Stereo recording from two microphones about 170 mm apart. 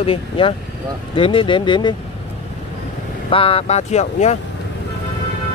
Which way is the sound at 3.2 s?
35° left (ahead or behind).